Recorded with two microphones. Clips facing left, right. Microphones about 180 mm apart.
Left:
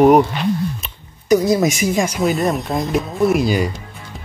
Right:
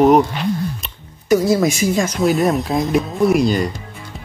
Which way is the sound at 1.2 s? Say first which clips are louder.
Even; 15° left (ahead or behind).